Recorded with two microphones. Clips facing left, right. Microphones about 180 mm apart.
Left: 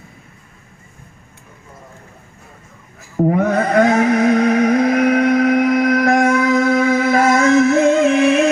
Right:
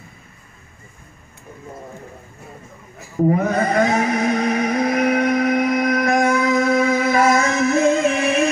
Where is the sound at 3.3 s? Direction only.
60° left (ahead or behind).